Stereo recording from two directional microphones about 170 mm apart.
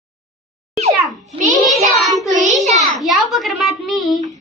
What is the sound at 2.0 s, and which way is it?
A child's voice, centre (ahead or behind).